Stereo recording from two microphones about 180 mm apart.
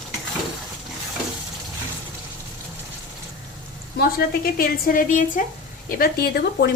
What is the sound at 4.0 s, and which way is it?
A woman's voice, 55° left (ahead or behind).